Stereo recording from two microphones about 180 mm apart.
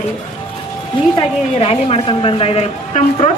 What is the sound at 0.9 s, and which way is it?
A woman's voice, 30° left (ahead or behind).